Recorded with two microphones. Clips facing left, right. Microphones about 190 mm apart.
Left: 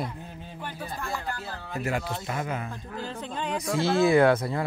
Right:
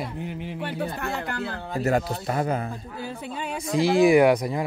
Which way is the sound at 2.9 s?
10° right (ahead or behind).